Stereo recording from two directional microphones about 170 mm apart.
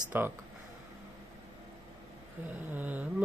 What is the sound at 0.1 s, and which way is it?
Speech, 10° right (ahead or behind).